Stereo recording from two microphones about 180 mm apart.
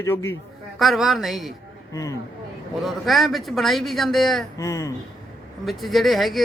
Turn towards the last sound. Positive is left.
turn(degrees=0)  # may be behind; listen again after turning